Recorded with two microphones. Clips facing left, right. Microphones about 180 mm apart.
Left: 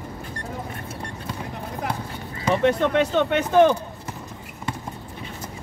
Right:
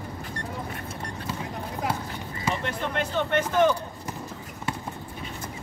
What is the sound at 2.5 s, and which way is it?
Speech, 65° left (ahead or behind).